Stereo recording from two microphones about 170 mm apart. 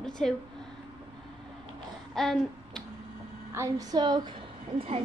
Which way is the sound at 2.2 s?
Centre (ahead or behind).